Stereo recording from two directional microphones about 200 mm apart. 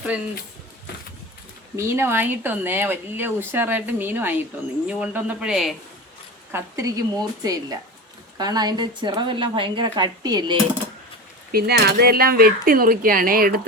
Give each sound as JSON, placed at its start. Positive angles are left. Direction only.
{"t": 1.7, "sound": "speech", "side_deg": -10}
{"t": 6.5, "sound": "a woman's voice", "side_deg": -15}
{"t": 11.5, "sound": "speech", "side_deg": -50}